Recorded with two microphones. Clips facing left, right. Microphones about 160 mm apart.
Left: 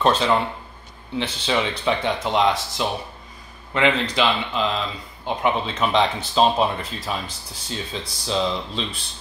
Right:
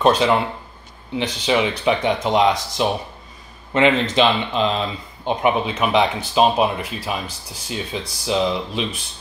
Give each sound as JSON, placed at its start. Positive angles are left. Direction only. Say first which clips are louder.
{"t": 0.0, "sound": "speech", "louder": "right 3 dB", "side_deg": -15}